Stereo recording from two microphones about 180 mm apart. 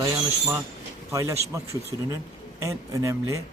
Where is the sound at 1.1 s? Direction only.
15° right (ahead or behind).